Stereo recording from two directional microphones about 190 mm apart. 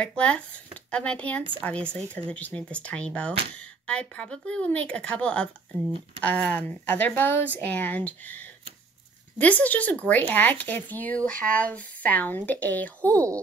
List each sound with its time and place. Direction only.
0.0 s speech: 5° left (ahead or behind)
9.4 s speech: 10° left (ahead or behind)
13.0 s speech: 15° right (ahead or behind)